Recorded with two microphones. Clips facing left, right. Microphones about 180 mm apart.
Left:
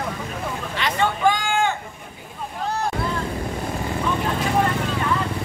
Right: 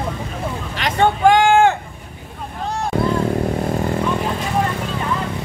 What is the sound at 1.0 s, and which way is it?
Vehicle, 60° right (ahead or behind).